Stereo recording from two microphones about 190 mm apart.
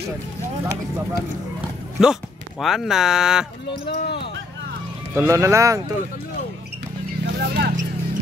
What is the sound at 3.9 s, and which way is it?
Speech, 60° left (ahead or behind).